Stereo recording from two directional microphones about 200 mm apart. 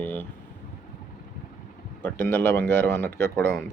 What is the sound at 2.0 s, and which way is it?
Speech, 10° left (ahead or behind).